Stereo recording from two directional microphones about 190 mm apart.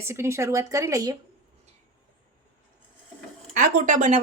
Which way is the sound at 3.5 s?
45° right (ahead or behind).